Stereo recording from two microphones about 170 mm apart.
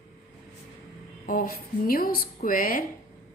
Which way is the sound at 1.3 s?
55° left (ahead or behind).